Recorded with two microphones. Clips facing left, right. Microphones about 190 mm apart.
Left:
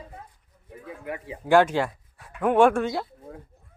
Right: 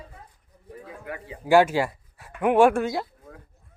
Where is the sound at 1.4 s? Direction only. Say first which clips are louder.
Right 1 dB; 5° right (ahead or behind).